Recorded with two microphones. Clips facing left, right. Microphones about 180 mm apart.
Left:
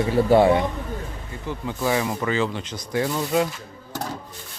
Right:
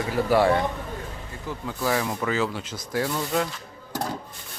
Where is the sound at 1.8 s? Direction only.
5° left (ahead or behind).